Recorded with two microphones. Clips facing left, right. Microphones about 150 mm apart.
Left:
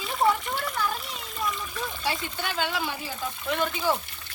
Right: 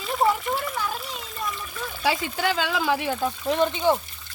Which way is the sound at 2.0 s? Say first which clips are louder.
Right 9 dB; 90° right.